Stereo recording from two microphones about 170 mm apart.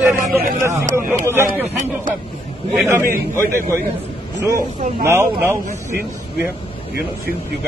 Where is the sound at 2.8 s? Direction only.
15° right (ahead or behind).